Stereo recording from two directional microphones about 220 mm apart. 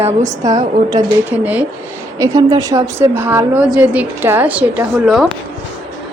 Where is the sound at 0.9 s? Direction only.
10° right (ahead or behind).